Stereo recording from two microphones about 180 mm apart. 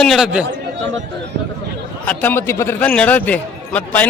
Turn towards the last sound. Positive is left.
turn(degrees=10)  # may be behind; listen again after turning